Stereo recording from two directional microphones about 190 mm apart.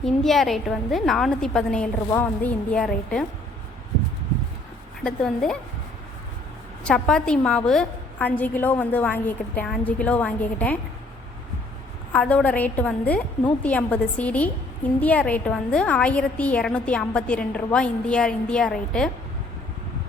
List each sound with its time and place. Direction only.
0.0 s a woman's voice: centre (ahead or behind)
5.0 s a woman's voice: 5° left (ahead or behind)
6.8 s a woman's voice: 5° left (ahead or behind)
12.1 s a woman's voice: 5° left (ahead or behind)